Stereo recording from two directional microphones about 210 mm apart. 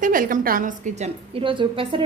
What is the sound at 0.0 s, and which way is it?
A woman's voice, 40° right (ahead or behind).